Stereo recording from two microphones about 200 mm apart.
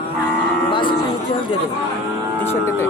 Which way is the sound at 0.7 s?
25° left (ahead or behind).